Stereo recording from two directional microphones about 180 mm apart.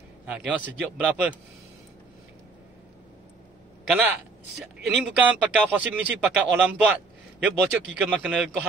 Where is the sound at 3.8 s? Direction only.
5° right (ahead or behind).